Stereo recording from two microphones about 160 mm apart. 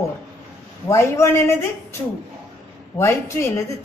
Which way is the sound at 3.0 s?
15° left (ahead or behind).